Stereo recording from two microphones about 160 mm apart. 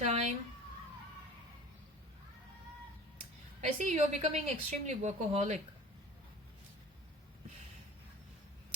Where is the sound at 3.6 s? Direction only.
50° right (ahead or behind).